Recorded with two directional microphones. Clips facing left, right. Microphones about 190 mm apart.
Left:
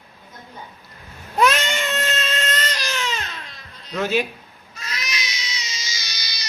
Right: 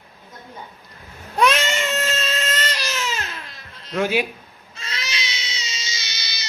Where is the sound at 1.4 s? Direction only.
Centre (ahead or behind).